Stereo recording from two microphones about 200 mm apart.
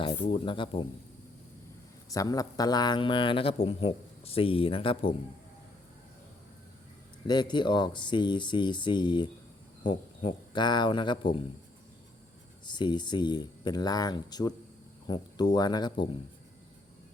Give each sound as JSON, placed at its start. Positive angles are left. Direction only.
{"t": 0.0, "sound": "speech", "side_deg": 25}
{"t": 2.1, "sound": "speech", "side_deg": 15}
{"t": 7.3, "sound": "speech", "side_deg": 20}
{"t": 12.6, "sound": "speech", "side_deg": 20}